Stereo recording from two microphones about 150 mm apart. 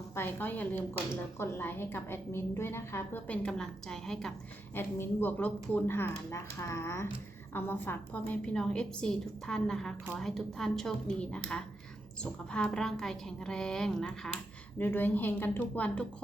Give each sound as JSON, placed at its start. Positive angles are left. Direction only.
{"t": 0.1, "sound": "a woman's voice", "side_deg": 15}
{"t": 4.7, "sound": "a woman's voice", "side_deg": 15}
{"t": 14.8, "sound": "a woman's voice", "side_deg": 15}